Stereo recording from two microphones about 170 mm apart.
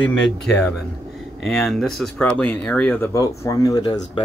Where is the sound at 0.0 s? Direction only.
5° left (ahead or behind).